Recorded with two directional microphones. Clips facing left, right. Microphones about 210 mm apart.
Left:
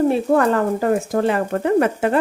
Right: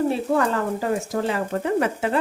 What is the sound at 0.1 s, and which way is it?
Speech, 55° left (ahead or behind).